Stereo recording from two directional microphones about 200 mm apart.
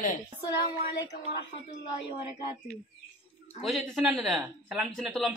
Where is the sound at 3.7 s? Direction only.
Centre (ahead or behind).